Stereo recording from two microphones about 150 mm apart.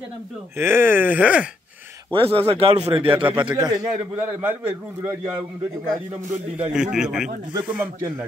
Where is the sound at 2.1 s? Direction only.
35° right (ahead or behind).